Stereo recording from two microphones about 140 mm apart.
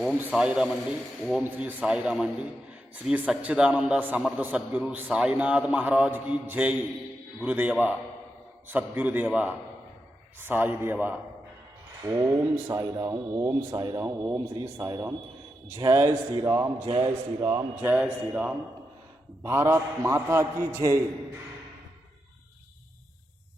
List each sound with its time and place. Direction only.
0.3 s a man's voice: 5° right (ahead or behind)
12.0 s a man's voice: 20° right (ahead or behind)
17.8 s a man's voice: 10° right (ahead or behind)